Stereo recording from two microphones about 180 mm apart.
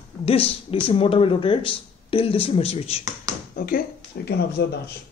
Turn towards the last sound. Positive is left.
turn(degrees=65)  # may be behind; listen again after turning